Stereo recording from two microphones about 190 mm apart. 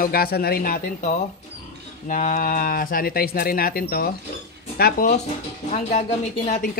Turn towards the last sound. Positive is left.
turn(degrees=40)  # may be behind; listen again after turning